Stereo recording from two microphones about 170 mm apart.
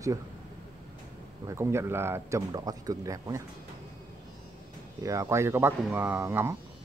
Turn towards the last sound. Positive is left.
turn(degrees=-15)  # may be behind; listen again after turning